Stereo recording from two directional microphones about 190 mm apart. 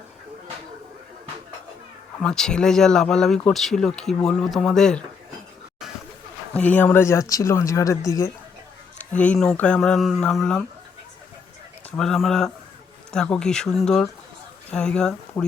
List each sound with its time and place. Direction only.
2.2 s speech: 5° left (ahead or behind)
6.5 s speech: 10° left (ahead or behind)
11.9 s speech: centre (ahead or behind)